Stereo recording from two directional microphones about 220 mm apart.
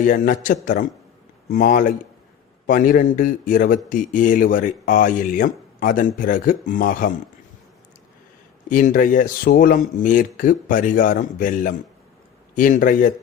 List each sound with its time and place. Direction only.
0.0 s speech: 35° left (ahead or behind)
8.7 s speech: 35° left (ahead or behind)